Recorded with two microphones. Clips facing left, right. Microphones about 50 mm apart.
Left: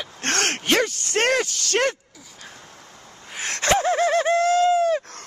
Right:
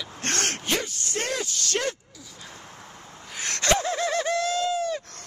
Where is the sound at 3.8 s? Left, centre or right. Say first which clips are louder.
Left 6 dB; left.